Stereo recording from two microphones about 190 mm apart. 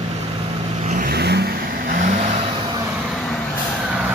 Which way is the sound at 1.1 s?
60° right (ahead or behind).